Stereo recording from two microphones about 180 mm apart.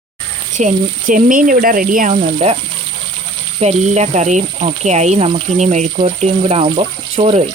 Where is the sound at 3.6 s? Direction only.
40° right (ahead or behind).